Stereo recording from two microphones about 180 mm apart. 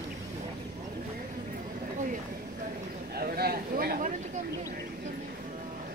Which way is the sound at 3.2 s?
60° right (ahead or behind).